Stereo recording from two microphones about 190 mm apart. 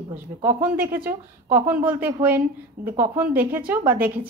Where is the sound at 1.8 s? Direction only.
10° right (ahead or behind).